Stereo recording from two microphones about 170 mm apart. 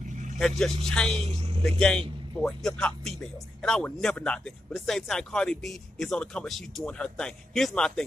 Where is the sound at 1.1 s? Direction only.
35° right (ahead or behind).